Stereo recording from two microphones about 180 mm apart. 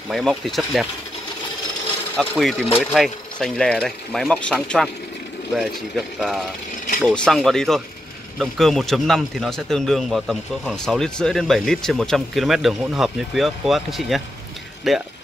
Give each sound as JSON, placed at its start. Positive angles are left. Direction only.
{"t": 0.1, "sound": "speech", "side_deg": 0}
{"t": 2.1, "sound": "speech", "side_deg": 0}